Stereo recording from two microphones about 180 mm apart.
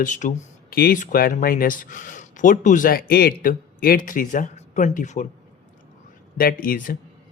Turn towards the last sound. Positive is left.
turn(degrees=50)  # may be behind; listen again after turning